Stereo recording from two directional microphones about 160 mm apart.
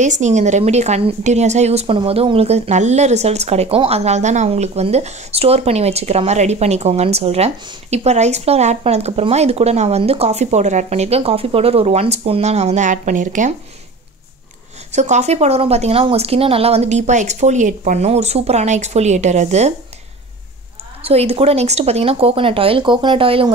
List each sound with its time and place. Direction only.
0.0 s speech: 50° right (ahead or behind)
14.9 s speech: 45° right (ahead or behind)
21.0 s speech: 40° right (ahead or behind)